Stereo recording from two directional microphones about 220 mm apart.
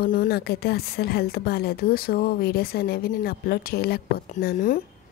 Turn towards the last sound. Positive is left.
turn(degrees=40)  # may be behind; listen again after turning